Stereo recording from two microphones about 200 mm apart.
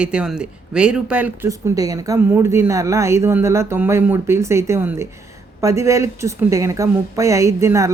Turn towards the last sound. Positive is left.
turn(degrees=-15)  # may be behind; listen again after turning